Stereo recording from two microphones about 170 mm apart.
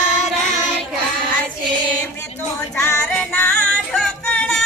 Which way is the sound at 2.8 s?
15° left (ahead or behind).